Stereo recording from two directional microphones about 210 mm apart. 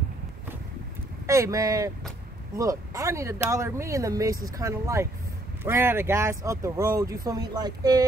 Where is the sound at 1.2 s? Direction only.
15° right (ahead or behind).